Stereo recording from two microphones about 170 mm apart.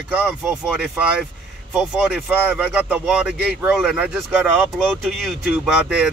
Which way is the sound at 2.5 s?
10° right (ahead or behind).